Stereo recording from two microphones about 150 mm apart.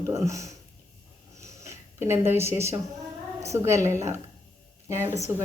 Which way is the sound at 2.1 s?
15° right (ahead or behind).